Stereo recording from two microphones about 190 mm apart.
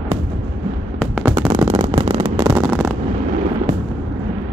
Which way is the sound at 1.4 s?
20° right (ahead or behind).